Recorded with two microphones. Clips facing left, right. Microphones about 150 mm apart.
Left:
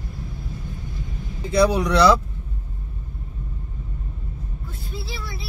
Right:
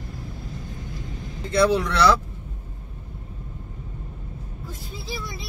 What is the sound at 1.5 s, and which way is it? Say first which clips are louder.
Speech: left 1 dB; 15° left (ahead or behind).